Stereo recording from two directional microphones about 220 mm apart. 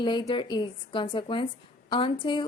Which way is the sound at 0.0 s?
20° left (ahead or behind).